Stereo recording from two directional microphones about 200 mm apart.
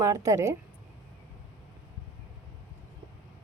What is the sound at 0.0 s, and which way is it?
Speech, 15° right (ahead or behind).